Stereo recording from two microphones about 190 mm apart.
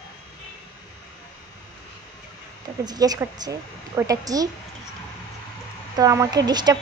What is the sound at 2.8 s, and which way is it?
A woman's voice, 20° right (ahead or behind).